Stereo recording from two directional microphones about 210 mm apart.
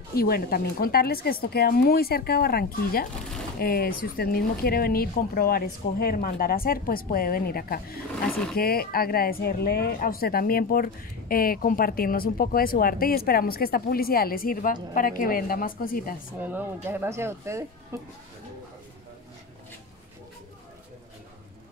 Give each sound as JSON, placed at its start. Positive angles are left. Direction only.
{"t": 0.1, "sound": "speech", "side_deg": 45}
{"t": 16.3, "sound": "speech", "side_deg": -10}